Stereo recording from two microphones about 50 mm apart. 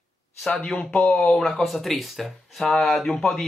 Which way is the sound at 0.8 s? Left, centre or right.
Left.